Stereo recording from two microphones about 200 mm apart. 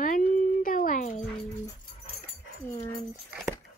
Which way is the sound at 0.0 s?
45° left (ahead or behind).